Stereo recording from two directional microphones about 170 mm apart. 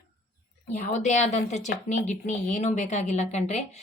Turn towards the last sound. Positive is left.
turn(degrees=40)  # may be behind; listen again after turning